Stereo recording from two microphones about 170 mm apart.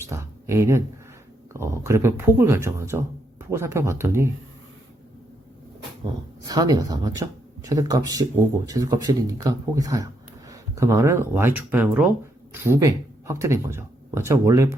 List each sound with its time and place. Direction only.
0.1 s speech: 15° right (ahead or behind)
6.4 s speech: 25° right (ahead or behind)